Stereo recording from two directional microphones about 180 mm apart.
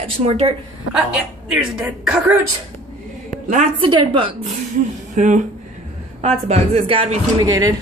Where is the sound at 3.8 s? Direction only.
30° right (ahead or behind).